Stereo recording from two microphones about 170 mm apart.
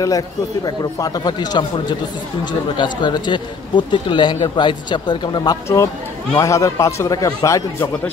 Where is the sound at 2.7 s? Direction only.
25° left (ahead or behind).